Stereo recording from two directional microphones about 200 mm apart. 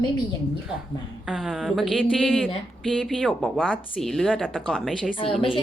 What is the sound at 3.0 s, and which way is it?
Speech, centre (ahead or behind).